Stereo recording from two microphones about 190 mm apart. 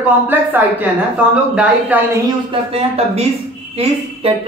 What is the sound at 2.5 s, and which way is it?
A woman's voice, 30° right (ahead or behind).